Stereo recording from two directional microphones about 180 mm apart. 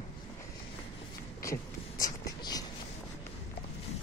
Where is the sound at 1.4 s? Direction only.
20° left (ahead or behind).